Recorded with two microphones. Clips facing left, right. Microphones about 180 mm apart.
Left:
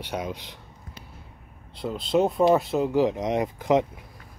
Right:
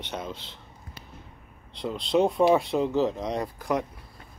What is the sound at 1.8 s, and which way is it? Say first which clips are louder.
Speech: left 1 dB; centre (ahead or behind).